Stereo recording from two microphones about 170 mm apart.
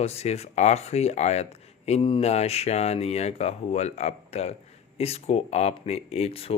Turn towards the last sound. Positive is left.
turn(degrees=35)  # may be behind; listen again after turning